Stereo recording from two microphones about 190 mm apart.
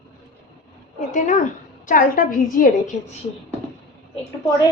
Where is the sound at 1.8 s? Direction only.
45° left (ahead or behind).